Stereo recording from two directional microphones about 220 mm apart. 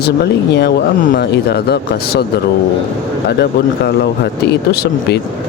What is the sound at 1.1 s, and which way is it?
Speech, 50° left (ahead or behind).